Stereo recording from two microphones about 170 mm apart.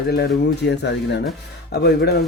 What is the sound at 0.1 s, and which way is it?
Speech, 80° left.